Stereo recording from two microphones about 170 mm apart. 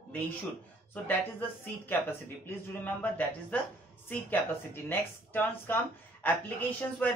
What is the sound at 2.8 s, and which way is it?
Speech, 10° left (ahead or behind).